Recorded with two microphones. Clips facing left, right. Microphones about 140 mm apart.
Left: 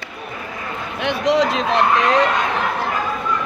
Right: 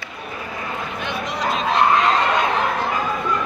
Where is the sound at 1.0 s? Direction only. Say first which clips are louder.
Left 10 dB; 90° left.